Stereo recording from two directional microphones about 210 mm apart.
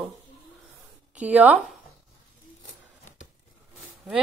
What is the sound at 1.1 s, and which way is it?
Speech, 5° right (ahead or behind).